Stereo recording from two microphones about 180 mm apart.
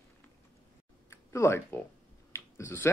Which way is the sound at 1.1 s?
15° left (ahead or behind).